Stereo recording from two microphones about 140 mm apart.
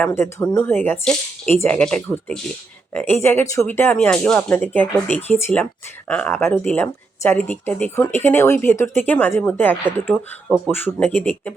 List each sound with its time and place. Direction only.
0.1 s speech: 20° left (ahead or behind)